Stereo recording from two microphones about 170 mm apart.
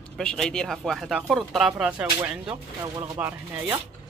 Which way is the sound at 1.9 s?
15° right (ahead or behind).